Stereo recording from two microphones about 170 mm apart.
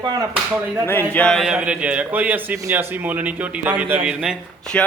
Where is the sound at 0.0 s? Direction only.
25° right (ahead or behind).